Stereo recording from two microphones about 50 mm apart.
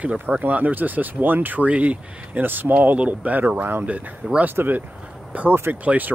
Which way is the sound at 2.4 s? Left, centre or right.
Right.